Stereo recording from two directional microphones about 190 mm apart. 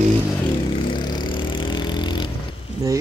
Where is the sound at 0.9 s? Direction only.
20° left (ahead or behind).